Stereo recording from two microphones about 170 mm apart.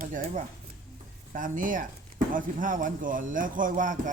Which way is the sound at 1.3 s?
50° right (ahead or behind).